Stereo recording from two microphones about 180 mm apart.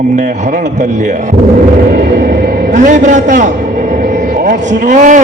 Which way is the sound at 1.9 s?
50° right (ahead or behind).